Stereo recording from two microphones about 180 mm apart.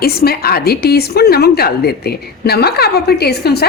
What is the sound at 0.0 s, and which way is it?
A woman's voice, 60° left (ahead or behind).